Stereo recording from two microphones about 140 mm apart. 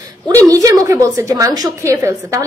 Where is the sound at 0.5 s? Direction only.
25° right (ahead or behind).